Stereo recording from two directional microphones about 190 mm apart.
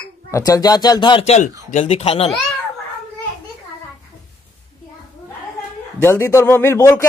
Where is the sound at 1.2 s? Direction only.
35° left (ahead or behind).